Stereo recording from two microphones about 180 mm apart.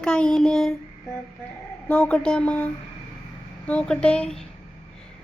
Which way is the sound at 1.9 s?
5° left (ahead or behind).